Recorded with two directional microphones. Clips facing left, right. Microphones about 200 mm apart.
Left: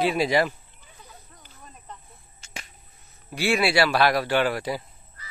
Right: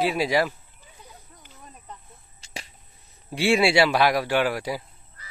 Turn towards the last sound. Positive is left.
turn(degrees=-10)  # may be behind; listen again after turning